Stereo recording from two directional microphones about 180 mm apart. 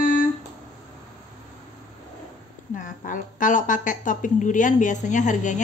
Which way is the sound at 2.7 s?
45° left (ahead or behind).